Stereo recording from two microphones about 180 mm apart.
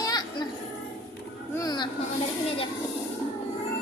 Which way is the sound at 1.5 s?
20° left (ahead or behind).